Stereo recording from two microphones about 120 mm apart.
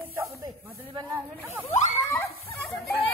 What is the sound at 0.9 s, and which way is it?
Snake, 25° right (ahead or behind).